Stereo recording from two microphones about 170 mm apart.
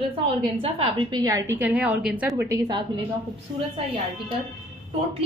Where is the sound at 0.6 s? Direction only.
35° right (ahead or behind).